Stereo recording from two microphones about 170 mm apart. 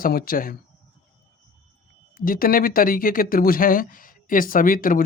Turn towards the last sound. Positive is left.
turn(degrees=55)  # may be behind; listen again after turning